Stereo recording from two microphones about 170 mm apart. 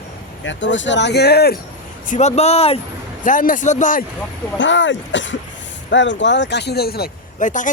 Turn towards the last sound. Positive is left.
turn(degrees=50)  # may be behind; listen again after turning